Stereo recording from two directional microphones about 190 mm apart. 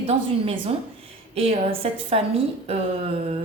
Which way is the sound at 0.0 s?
30° right (ahead or behind).